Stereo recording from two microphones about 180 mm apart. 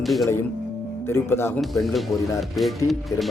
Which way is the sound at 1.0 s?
15° left (ahead or behind).